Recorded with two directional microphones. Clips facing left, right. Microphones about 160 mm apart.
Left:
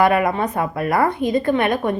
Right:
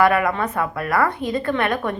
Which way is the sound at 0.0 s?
25° left (ahead or behind).